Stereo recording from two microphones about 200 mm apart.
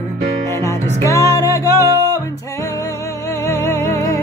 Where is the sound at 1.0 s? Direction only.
15° left (ahead or behind).